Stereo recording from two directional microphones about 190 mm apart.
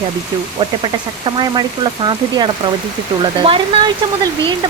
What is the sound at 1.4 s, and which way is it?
A woman's voice, 25° right (ahead or behind).